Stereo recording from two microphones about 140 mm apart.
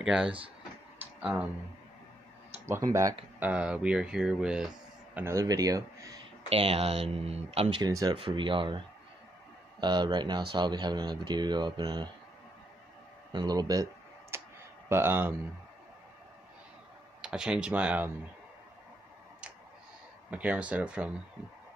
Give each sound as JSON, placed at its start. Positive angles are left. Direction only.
{"t": 0.0, "sound": "speech", "side_deg": -5}
{"t": 2.6, "sound": "speech", "side_deg": -20}
{"t": 3.3, "sound": "speech", "side_deg": -10}
{"t": 5.2, "sound": "speech", "side_deg": -20}
{"t": 6.5, "sound": "speech", "side_deg": -45}
{"t": 7.8, "sound": "speech", "side_deg": -30}
{"t": 13.3, "sound": "speech", "side_deg": -30}
{"t": 14.3, "sound": "clicking", "side_deg": -20}
{"t": 14.9, "sound": "speech", "side_deg": -15}
{"t": 17.2, "sound": "speech", "side_deg": -5}
{"t": 20.2, "sound": "speech", "side_deg": -10}